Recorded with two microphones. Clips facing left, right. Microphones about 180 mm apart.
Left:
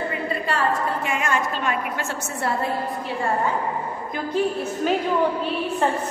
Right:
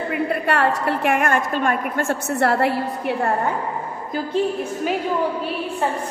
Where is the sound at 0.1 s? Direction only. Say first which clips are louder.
Right 5 dB; 65° right (ahead or behind).